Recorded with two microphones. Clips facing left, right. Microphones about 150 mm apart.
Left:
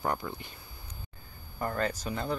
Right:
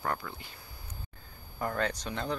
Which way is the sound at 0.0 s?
20° left (ahead or behind).